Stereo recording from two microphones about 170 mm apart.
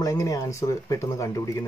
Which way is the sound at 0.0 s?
20° left (ahead or behind).